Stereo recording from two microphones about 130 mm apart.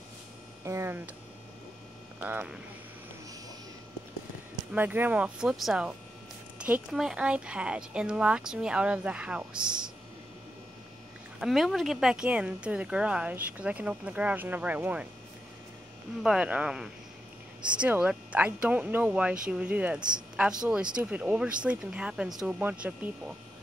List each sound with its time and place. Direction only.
0.7 s speech: 20° right (ahead or behind)
2.2 s speech: 15° right (ahead or behind)
4.7 s speech: 15° right (ahead or behind)
11.3 s speech: centre (ahead or behind)
16.2 s speech: 5° right (ahead or behind)